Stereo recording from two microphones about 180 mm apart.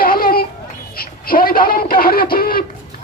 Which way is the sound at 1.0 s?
55° left (ahead or behind).